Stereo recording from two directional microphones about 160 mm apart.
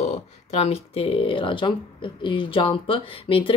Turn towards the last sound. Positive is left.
turn(degrees=35)  # may be behind; listen again after turning